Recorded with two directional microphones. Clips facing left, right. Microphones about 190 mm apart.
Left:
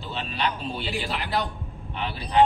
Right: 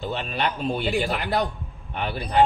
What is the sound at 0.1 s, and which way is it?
A man's voice, 50° right (ahead or behind).